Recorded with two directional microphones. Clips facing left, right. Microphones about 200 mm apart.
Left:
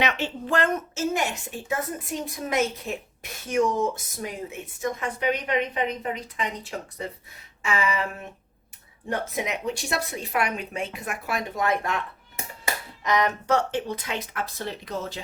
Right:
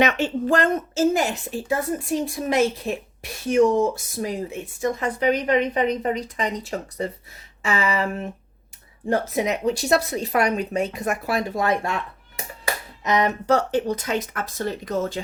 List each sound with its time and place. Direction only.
0.0 s a woman's voice: 45° right (ahead or behind); by 11.9 s 30° right (ahead or behind)
13.0 s a sound: 25° right (ahead or behind)
13.5 s speech: 40° right (ahead or behind)